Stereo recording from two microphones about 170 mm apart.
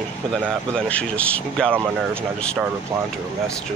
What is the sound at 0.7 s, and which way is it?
Speech, 5° left (ahead or behind).